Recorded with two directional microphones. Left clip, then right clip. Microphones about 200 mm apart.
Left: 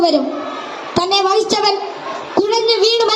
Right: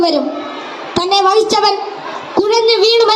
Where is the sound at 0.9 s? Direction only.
15° right (ahead or behind).